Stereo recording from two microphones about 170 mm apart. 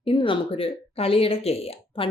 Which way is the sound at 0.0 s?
30° left (ahead or behind).